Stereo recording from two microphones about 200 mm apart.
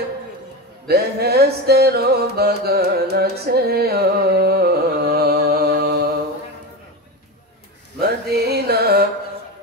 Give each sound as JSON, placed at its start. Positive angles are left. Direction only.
{"t": 0.8, "sound": "music", "side_deg": -55}
{"t": 8.0, "sound": "music", "side_deg": -55}